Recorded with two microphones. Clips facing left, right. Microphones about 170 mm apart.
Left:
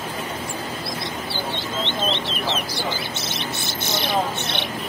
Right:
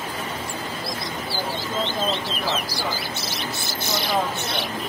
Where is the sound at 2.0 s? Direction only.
25° left (ahead or behind).